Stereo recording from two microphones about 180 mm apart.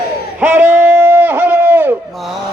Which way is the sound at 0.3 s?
10° right (ahead or behind).